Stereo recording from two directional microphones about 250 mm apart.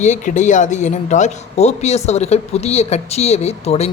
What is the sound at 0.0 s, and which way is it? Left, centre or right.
Speech, left.